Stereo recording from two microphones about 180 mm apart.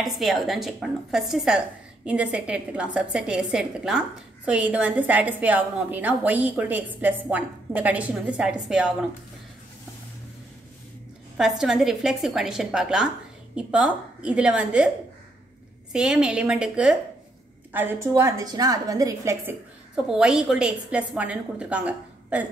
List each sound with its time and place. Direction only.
0.0 s a woman's voice: centre (ahead or behind)
11.3 s a woman's voice: 5° right (ahead or behind)
15.9 s a woman's voice: 5° right (ahead or behind)
20.1 s a woman's voice: 5° right (ahead or behind)